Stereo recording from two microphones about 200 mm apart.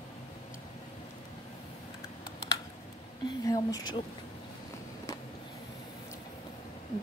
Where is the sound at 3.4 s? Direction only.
20° left (ahead or behind).